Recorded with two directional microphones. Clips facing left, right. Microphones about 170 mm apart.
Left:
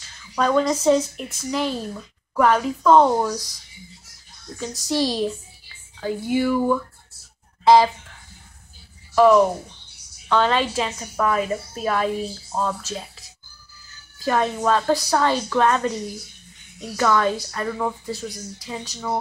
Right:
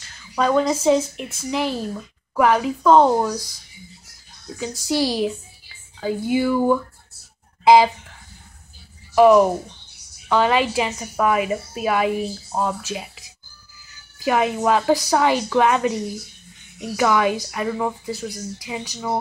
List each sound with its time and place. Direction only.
0.4 s a woman's voice: 5° right (ahead or behind)
4.6 s a woman's voice: 10° right (ahead or behind)
9.1 s a woman's voice: 15° right (ahead or behind)
14.2 s a woman's voice: 10° right (ahead or behind)